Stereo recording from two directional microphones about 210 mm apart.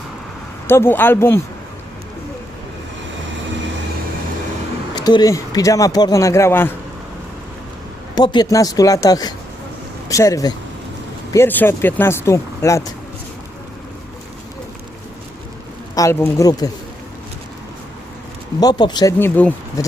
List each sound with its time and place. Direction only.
0.7 s a man's voice: 10° left (ahead or behind)
4.9 s a man's voice: 20° left (ahead or behind)
8.1 s a man's voice: 20° left (ahead or behind)
16.0 s a man's voice: 15° left (ahead or behind)
18.6 s a man's voice: 20° left (ahead or behind)